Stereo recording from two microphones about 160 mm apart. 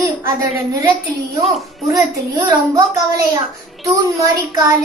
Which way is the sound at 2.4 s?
20° right (ahead or behind).